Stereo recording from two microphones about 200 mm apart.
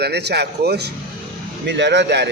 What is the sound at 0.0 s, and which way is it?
Speech, 55° right (ahead or behind).